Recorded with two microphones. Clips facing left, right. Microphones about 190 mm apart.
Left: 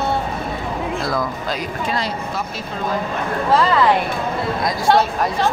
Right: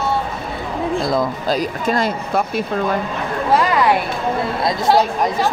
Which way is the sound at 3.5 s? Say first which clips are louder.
Even; 15° right (ahead or behind).